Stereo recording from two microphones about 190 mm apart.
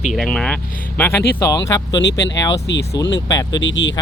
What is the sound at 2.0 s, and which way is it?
Speech, 65° left (ahead or behind).